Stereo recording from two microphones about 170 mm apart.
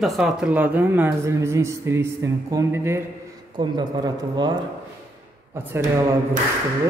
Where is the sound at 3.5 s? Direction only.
25° right (ahead or behind).